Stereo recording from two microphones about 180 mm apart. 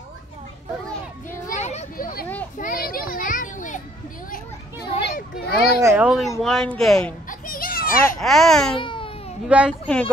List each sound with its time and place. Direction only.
1.5 s a sound: 40° left (ahead or behind)
2.5 s children playing: 50° left (ahead or behind)
5.0 s children playing: 60° left (ahead or behind)
5.8 s speech: 15° right (ahead or behind)
6.0 s speech: centre (ahead or behind)
7.2 s children playing: 50° left (ahead or behind)
8.2 s speech: centre (ahead or behind)
8.7 s baby cry: 30° left (ahead or behind)
9.5 s speech: 5° right (ahead or behind)